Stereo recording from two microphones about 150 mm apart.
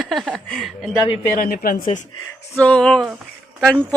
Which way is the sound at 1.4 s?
75° left (ahead or behind).